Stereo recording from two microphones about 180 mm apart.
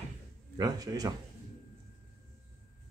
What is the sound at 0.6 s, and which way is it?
Speech, 20° right (ahead or behind).